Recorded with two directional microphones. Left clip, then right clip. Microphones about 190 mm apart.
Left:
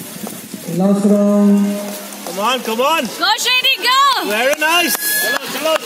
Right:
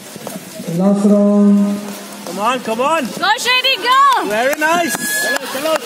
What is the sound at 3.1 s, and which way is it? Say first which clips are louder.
Speech: even; 10° left (ahead or behind).